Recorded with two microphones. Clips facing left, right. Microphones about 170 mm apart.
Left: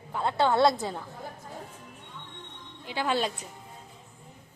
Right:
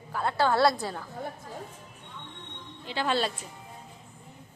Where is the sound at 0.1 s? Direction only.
20° left (ahead or behind).